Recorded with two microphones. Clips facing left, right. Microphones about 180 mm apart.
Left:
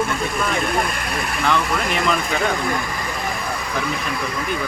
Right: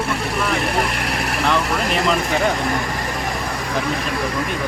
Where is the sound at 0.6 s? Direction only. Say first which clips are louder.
Right 1 dB; 75° right (ahead or behind).